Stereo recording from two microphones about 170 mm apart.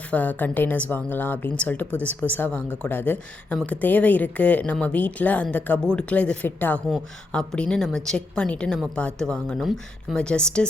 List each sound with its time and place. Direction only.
0.1 s a woman's voice: 10° left (ahead or behind)